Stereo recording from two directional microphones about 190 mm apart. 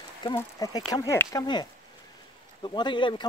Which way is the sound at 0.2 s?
20° left (ahead or behind).